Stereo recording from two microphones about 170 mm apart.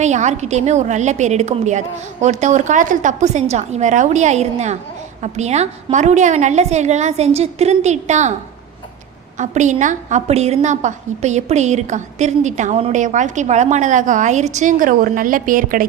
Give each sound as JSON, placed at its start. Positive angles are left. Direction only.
{"t": 0.0, "sound": "a woman's voice", "side_deg": -45}
{"t": 9.4, "sound": "a woman's voice", "side_deg": -45}